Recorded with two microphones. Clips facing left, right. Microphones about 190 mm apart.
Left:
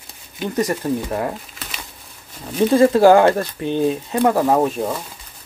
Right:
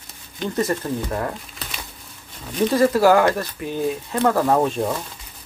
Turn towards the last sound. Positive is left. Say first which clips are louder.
# left 1 dB
turn(degrees=5)  # may be behind; listen again after turning